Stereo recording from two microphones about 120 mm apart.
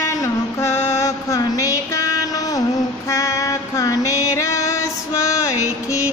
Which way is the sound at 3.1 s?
25° left (ahead or behind).